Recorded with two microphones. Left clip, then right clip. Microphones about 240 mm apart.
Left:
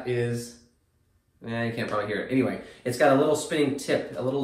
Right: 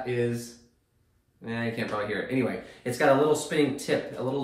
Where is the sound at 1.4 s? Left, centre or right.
Centre.